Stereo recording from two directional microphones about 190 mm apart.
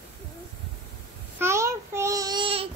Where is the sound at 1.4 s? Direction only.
15° right (ahead or behind).